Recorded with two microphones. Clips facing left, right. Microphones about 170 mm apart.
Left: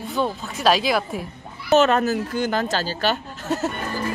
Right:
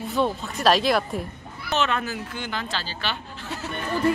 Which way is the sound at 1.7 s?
40° left (ahead or behind).